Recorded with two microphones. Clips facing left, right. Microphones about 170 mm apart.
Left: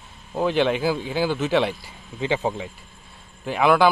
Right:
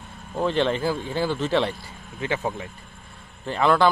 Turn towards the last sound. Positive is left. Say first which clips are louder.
# left 2 dB
turn(degrees=10)  # may be behind; listen again after turning